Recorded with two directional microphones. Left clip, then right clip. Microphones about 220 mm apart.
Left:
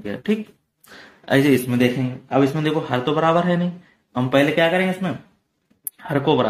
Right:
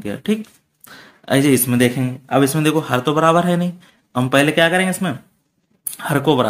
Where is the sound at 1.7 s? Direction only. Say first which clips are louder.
Right 3 dB; 25° right (ahead or behind).